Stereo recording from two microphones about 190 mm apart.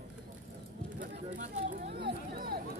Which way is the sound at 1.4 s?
45° right (ahead or behind).